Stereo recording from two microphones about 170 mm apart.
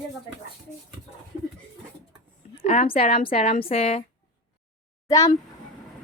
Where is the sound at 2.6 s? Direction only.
35° left (ahead or behind).